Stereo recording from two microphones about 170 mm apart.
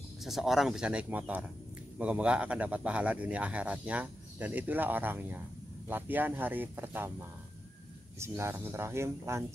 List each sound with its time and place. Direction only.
0.2 s speech: centre (ahead or behind)